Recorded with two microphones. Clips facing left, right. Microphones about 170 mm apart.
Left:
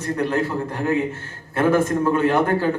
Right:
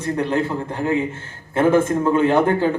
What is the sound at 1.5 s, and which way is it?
Speech, 25° right (ahead or behind).